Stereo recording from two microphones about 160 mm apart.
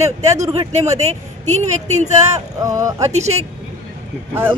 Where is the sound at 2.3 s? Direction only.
20° right (ahead or behind).